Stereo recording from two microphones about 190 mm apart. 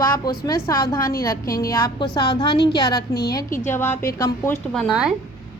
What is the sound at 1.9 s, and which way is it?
A woman's voice, 25° left (ahead or behind).